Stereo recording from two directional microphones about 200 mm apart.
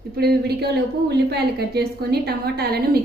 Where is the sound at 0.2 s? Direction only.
55° right (ahead or behind).